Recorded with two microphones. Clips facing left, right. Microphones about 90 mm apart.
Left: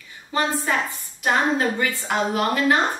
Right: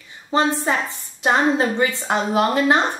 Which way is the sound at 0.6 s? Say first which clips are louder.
Right 2 dB; 25° right (ahead or behind).